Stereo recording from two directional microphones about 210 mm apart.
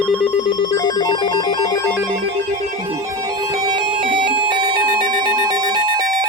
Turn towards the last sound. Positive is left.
turn(degrees=-20)  # may be behind; listen again after turning